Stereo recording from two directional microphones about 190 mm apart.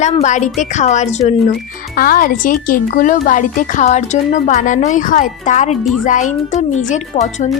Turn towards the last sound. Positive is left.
turn(degrees=40)  # may be behind; listen again after turning